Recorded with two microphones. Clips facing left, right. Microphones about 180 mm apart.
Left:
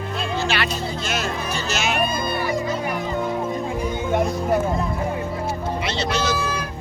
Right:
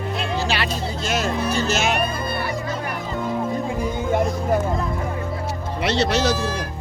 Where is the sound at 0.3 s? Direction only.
35° right (ahead or behind).